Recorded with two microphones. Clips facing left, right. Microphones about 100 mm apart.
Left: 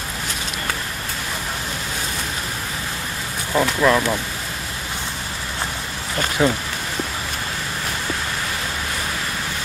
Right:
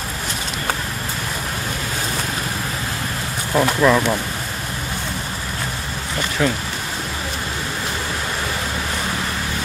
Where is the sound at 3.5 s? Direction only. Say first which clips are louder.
Right 2 dB; centre (ahead or behind).